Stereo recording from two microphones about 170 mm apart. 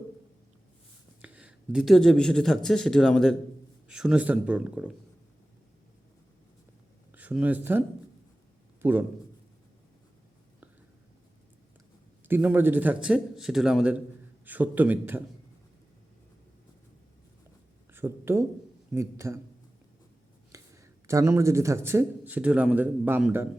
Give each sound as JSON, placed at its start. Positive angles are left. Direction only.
{"t": 1.2, "sound": "a man's voice", "side_deg": -5}
{"t": 7.1, "sound": "a man's voice", "side_deg": -10}
{"t": 12.3, "sound": "a man's voice", "side_deg": -10}
{"t": 17.9, "sound": "a man's voice", "side_deg": -15}
{"t": 20.5, "sound": "speech", "side_deg": -20}